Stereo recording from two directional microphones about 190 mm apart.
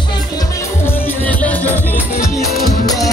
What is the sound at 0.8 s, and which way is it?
Music, 10° left (ahead or behind).